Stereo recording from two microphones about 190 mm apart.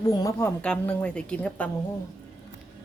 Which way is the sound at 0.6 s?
5° left (ahead or behind).